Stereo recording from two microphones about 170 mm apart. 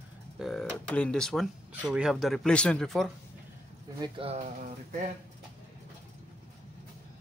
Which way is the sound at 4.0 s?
35° right (ahead or behind).